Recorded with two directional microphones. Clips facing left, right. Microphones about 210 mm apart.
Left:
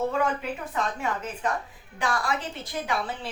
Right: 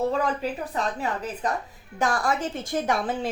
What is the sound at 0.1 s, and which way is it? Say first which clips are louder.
A woman's voice: right 1 dB; 35° right (ahead or behind).